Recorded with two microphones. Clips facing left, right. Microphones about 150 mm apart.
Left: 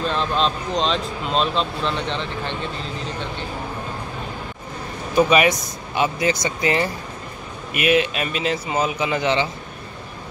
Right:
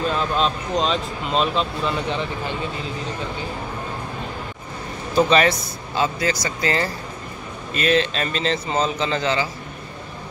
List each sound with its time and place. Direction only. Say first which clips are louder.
0.0 s speech: even; 5° right (ahead or behind)
5.1 s a man's voice: left 1 dB; 15° left (ahead or behind)